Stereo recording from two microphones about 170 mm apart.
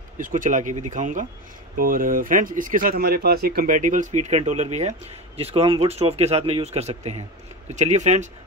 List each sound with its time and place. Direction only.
0.2 s speech: 50° right (ahead or behind)